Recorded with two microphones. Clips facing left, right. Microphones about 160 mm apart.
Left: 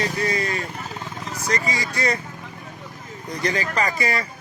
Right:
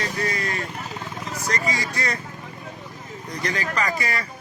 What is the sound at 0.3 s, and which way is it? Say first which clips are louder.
Vehicle: left 3 dB; 20° left (ahead or behind).